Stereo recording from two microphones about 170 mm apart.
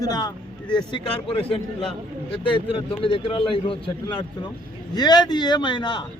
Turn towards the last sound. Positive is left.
turn(degrees=30)  # may be behind; listen again after turning